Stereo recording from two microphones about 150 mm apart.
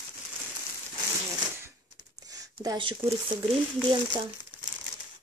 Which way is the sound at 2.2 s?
25° right (ahead or behind).